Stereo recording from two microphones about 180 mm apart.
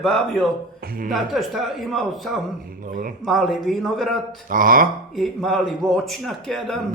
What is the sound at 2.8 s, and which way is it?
Speech, 50° right (ahead or behind).